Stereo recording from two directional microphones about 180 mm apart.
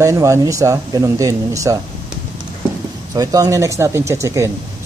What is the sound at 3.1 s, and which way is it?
Speech, 20° right (ahead or behind).